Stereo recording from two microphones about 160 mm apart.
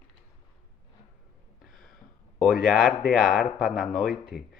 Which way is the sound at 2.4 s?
5° right (ahead or behind).